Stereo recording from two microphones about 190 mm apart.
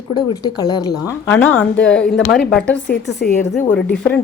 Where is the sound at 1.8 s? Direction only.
5° left (ahead or behind).